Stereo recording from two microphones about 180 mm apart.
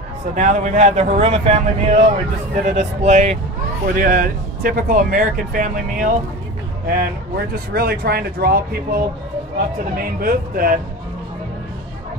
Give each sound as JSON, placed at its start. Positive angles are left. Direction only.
{"t": 0.3, "sound": "speech", "side_deg": -40}
{"t": 3.8, "sound": "speech", "side_deg": -50}
{"t": 7.5, "sound": "speech", "side_deg": -60}